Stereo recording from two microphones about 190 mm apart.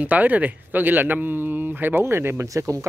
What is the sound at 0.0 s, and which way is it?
Speech, 10° right (ahead or behind).